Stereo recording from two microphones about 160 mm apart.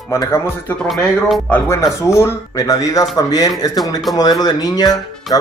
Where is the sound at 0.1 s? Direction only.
15° left (ahead or behind).